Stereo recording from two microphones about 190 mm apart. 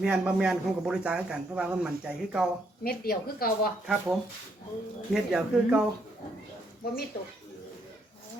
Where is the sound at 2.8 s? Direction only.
50° left (ahead or behind).